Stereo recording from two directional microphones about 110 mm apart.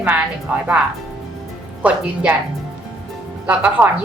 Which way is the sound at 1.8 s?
10° right (ahead or behind).